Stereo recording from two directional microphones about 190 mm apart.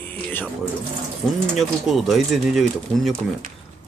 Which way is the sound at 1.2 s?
Centre (ahead or behind).